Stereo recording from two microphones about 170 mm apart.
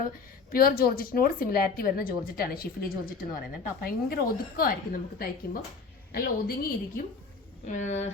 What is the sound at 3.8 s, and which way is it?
Speech, 60° left (ahead or behind).